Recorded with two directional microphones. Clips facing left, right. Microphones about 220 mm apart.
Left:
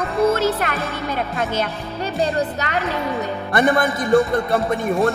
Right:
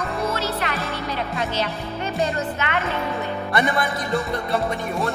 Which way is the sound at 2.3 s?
40° left (ahead or behind).